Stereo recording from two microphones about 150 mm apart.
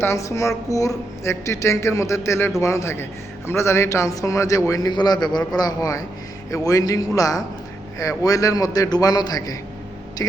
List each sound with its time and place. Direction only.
0.0 s a man's voice: 20° left (ahead or behind)